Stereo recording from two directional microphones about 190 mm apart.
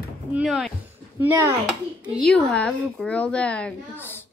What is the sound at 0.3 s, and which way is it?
Speech, 5° right (ahead or behind).